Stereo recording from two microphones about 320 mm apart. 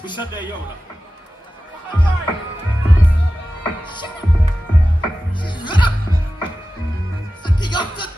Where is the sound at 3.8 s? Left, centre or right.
Centre.